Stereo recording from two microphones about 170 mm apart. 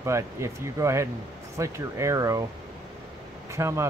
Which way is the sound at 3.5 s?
15° right (ahead or behind).